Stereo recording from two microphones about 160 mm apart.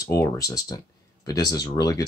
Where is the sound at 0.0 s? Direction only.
20° left (ahead or behind).